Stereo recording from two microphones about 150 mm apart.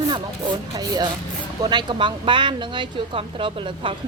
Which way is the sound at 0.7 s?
25° right (ahead or behind).